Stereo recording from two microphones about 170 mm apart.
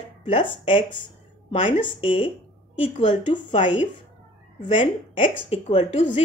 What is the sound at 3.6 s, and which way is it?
A woman's voice, 30° left (ahead or behind).